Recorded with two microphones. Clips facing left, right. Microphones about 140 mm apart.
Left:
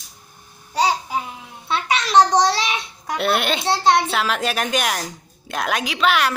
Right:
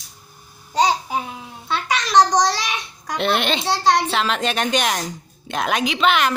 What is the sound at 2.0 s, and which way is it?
Babbling, 30° left (ahead or behind).